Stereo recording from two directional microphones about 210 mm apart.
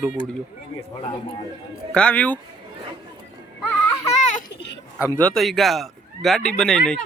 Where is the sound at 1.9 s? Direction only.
5° left (ahead or behind).